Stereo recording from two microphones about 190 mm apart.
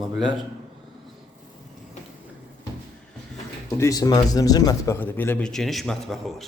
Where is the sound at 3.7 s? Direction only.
15° left (ahead or behind); by 6.5 s centre (ahead or behind).